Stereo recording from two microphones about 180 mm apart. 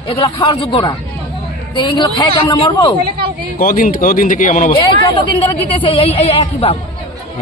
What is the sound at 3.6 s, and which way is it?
Speech, 50° left (ahead or behind).